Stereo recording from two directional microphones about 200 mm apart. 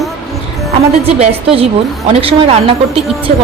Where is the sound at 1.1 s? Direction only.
30° right (ahead or behind).